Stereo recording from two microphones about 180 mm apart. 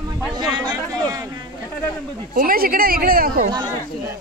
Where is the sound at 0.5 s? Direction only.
20° right (ahead or behind).